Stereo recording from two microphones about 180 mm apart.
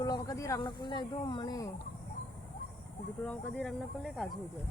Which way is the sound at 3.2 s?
5° left (ahead or behind).